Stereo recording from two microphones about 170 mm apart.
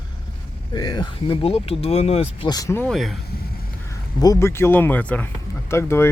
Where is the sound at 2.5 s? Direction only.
20° left (ahead or behind).